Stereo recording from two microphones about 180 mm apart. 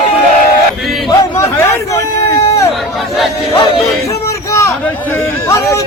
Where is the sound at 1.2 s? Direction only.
15° left (ahead or behind).